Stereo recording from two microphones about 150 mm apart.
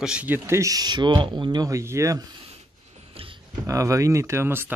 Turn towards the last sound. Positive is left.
turn(degrees=-15)  # may be behind; listen again after turning